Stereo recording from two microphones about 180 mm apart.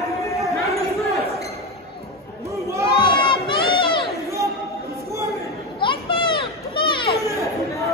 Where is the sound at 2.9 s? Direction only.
25° left (ahead or behind).